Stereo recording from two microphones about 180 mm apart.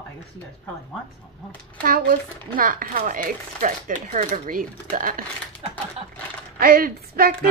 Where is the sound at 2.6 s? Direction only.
50° right (ahead or behind).